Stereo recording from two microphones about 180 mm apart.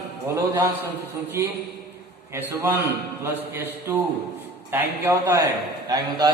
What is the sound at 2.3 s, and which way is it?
A man's voice, 10° right (ahead or behind).